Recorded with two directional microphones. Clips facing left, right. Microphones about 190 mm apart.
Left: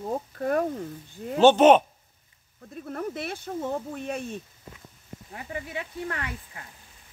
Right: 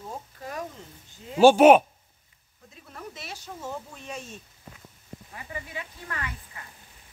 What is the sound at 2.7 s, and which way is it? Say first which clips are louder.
Speech: left 10 dB; 55° left (ahead or behind).